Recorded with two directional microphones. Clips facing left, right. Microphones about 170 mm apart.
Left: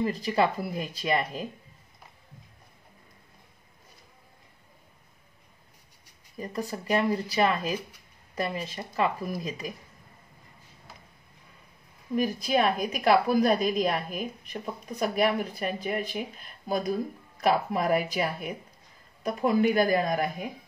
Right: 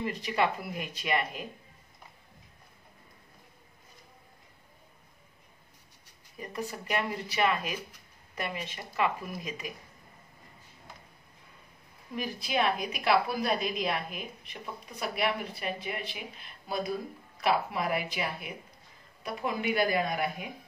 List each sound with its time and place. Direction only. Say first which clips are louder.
0.0 s speech: left 4 dB; 35° left (ahead or behind)
6.3 s speech: left 4 dB; 35° left (ahead or behind)
12.2 s a woman's voice: left 5 dB; 45° left (ahead or behind)